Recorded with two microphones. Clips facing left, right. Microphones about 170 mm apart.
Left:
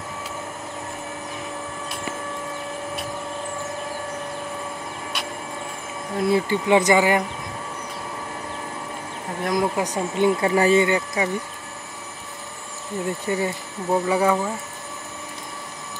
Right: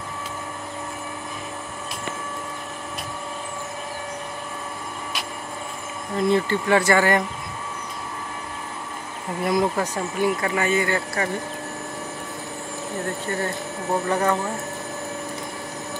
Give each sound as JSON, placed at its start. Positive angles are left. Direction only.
{"t": 6.1, "sound": "speech", "side_deg": 5}
{"t": 9.4, "sound": "speech", "side_deg": -5}
{"t": 9.8, "sound": "speech", "side_deg": 20}
{"t": 11.2, "sound": "speech", "side_deg": 15}
{"t": 13.3, "sound": "speech", "side_deg": 10}